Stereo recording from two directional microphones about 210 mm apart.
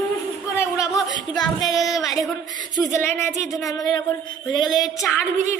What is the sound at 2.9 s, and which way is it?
A woman's voice, 10° left (ahead or behind).